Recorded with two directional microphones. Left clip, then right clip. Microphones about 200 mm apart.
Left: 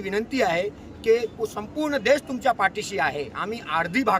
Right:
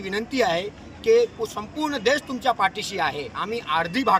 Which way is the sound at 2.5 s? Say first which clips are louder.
Even; 5° left (ahead or behind).